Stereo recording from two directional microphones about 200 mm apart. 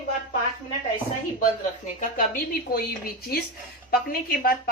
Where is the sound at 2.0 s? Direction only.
45° left (ahead or behind).